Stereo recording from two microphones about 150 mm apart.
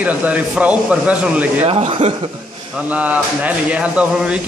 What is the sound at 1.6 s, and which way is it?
Speech, 40° right (ahead or behind).